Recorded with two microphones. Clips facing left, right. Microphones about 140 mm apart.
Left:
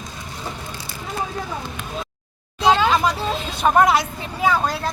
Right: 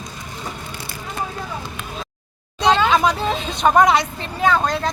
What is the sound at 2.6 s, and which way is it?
Speech, 5° left (ahead or behind).